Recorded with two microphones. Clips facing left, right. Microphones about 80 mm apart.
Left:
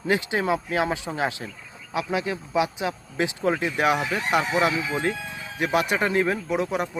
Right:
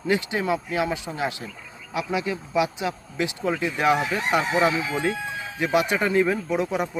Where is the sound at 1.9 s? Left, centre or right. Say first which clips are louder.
Even; left.